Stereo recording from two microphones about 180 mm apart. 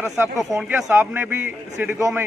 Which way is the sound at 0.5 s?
10° right (ahead or behind).